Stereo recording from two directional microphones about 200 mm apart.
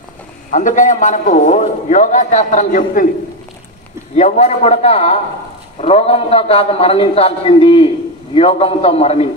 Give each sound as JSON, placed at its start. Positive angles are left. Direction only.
{"t": 0.5, "sound": "a man's voice", "side_deg": 40}
{"t": 4.1, "sound": "a man's voice", "side_deg": 35}